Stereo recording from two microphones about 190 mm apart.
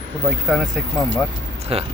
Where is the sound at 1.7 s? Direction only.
30° right (ahead or behind).